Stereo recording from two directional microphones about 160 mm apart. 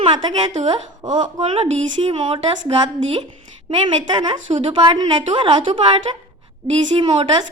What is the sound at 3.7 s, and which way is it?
A woman's voice, 30° right (ahead or behind).